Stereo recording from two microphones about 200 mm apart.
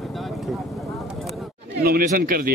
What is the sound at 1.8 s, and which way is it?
Speech, 45° right (ahead or behind).